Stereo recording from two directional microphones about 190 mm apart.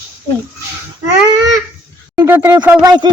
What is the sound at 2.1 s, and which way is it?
Speech, 15° right (ahead or behind).